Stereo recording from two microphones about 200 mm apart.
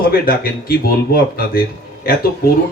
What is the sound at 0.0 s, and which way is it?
A man's voice, 50° left (ahead or behind).